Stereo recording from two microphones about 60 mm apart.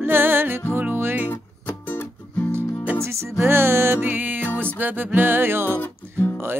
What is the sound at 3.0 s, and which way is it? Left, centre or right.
Music, right.